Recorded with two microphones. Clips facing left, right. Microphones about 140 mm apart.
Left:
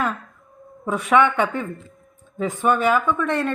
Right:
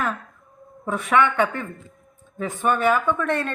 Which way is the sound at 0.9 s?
15° left (ahead or behind).